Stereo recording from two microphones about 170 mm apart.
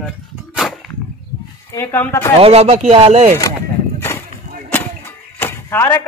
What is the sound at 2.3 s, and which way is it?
Speech, 35° right (ahead or behind).